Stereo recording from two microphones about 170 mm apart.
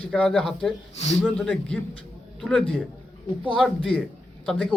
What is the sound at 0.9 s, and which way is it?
Speech, 40° left (ahead or behind).